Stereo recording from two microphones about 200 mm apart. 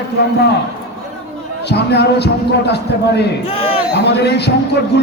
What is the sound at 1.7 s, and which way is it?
A man's voice, 55° left (ahead or behind).